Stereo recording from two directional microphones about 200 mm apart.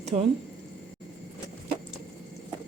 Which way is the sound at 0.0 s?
30° right (ahead or behind).